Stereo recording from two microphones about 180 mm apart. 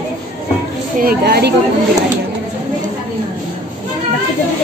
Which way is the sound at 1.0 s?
60° right (ahead or behind).